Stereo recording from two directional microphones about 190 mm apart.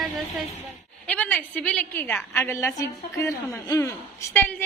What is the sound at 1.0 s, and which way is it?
A woman's voice, 5° left (ahead or behind).